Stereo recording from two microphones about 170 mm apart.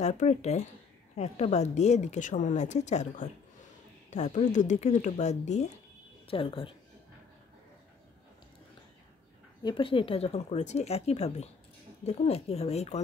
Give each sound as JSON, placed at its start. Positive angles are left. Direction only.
{"t": 0.0, "sound": "a woman's voice", "side_deg": 40}
{"t": 6.2, "sound": "speech", "side_deg": 30}
{"t": 9.6, "sound": "speech", "side_deg": 30}